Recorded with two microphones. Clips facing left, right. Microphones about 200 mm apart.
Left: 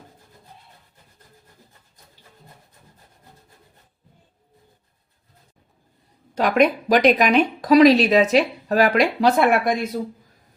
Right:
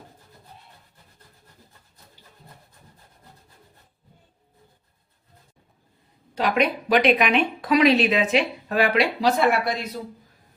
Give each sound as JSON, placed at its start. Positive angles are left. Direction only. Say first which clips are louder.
{"t": 6.3, "sound": "speech", "louder": "left 5 dB", "side_deg": 45}